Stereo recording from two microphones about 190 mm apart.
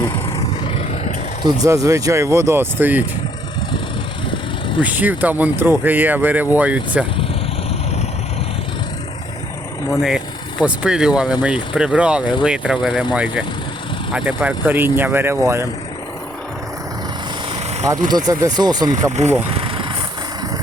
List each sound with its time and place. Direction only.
1.5 s speech: 15° right (ahead or behind)
4.8 s speech: 10° right (ahead or behind)
10.6 s speech: 5° right (ahead or behind)
18.3 s speech: 20° right (ahead or behind)
19.1 s speech: 35° right (ahead or behind)
19.5 s vehicle: 25° right (ahead or behind)